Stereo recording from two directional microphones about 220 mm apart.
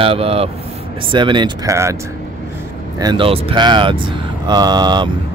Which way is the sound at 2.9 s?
20° right (ahead or behind).